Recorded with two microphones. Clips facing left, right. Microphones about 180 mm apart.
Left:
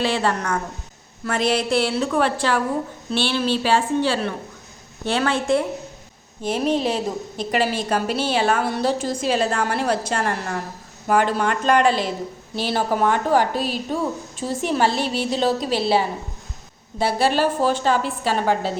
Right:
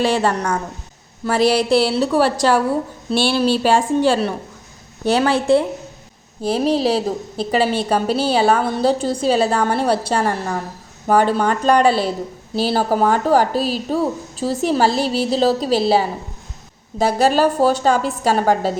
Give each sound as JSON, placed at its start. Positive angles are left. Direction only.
{"t": 0.0, "sound": "a woman's voice", "side_deg": -40}
{"t": 11.6, "sound": "speech", "side_deg": -35}